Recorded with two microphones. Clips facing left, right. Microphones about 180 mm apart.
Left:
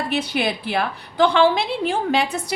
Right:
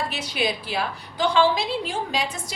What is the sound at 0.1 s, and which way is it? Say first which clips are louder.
A woman's voice: left 4 dB; 55° left (ahead or behind).